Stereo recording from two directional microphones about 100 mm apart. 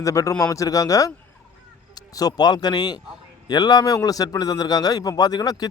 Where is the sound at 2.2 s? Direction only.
40° left (ahead or behind).